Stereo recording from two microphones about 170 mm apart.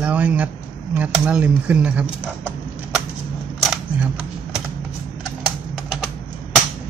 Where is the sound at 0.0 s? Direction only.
10° right (ahead or behind).